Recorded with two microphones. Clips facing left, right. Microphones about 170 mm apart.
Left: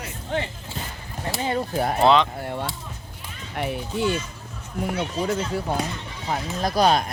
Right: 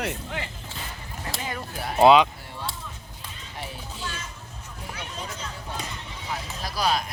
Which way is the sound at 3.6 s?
65° left (ahead or behind).